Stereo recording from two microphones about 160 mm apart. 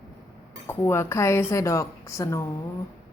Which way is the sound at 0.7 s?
15° left (ahead or behind).